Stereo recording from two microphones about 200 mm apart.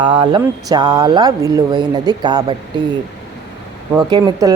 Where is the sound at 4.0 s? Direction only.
20° right (ahead or behind).